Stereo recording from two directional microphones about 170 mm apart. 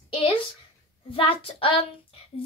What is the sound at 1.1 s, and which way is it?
Speech, 30° left (ahead or behind).